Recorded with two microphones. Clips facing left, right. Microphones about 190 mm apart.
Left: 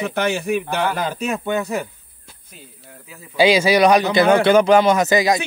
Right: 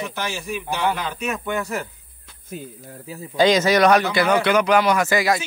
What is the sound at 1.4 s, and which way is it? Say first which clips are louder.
Speech: left 4 dB; 20° left (ahead or behind).